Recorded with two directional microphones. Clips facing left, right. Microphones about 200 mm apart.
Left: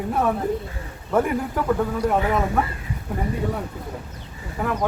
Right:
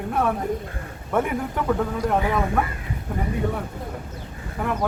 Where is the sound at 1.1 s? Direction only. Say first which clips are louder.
Left 2 dB; centre (ahead or behind).